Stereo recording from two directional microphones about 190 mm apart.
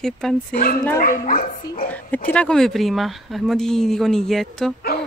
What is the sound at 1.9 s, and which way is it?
A woman's voice, 10° left (ahead or behind).